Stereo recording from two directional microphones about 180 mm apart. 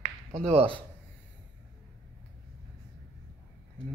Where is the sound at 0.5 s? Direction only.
35° right (ahead or behind).